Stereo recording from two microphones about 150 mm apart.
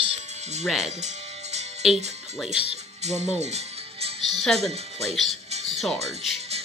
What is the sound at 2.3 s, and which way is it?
Speech, 5° right (ahead or behind).